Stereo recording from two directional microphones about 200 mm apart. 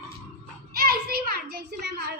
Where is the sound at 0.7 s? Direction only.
50° right (ahead or behind).